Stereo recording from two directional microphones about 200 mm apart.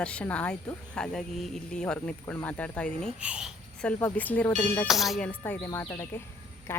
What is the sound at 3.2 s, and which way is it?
Speech, 5° right (ahead or behind).